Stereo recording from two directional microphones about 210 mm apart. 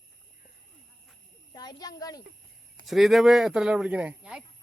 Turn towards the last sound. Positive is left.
turn(degrees=-5)  # may be behind; listen again after turning